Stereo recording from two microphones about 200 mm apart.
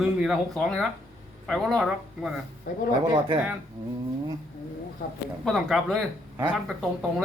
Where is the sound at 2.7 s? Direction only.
40° left (ahead or behind).